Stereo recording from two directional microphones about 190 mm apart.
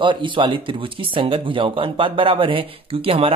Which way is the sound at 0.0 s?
25° right (ahead or behind).